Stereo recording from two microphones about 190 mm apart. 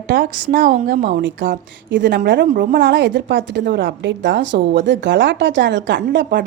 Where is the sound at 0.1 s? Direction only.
50° right (ahead or behind).